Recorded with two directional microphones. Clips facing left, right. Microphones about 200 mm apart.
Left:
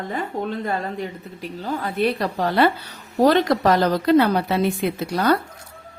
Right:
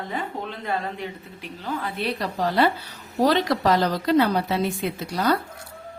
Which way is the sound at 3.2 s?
50° left (ahead or behind).